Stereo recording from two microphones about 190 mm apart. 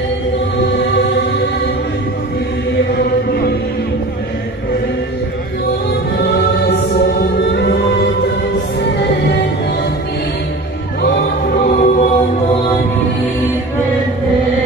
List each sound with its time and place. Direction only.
6.1 s music: 60° left (ahead or behind)
11.5 s music: 45° left (ahead or behind)